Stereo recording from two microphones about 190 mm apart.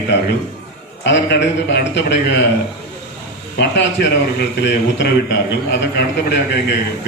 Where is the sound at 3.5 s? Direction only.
65° left (ahead or behind).